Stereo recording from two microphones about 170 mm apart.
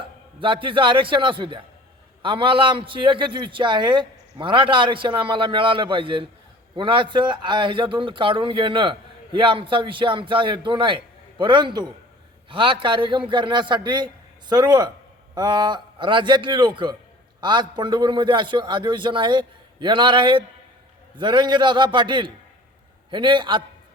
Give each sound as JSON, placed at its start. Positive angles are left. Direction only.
{"t": 0.0, "sound": "a man's voice", "side_deg": -30}